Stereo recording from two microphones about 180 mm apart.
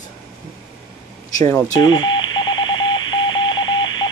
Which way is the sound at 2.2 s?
90° left.